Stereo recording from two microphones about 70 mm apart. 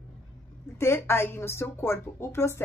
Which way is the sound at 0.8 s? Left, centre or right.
Left.